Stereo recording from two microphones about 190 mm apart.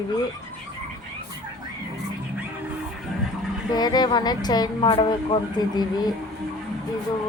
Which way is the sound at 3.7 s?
20° left (ahead or behind).